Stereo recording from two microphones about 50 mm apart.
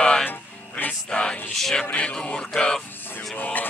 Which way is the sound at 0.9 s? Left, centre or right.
Centre.